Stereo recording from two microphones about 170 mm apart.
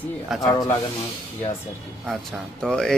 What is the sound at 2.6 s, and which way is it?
Speech, 5° left (ahead or behind).